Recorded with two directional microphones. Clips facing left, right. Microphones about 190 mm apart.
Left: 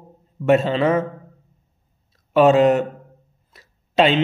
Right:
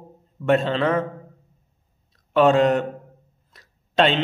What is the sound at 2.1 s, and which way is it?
Speech, 5° left (ahead or behind).